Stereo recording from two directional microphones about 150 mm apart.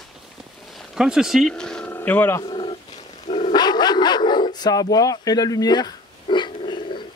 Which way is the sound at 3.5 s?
30° left (ahead or behind).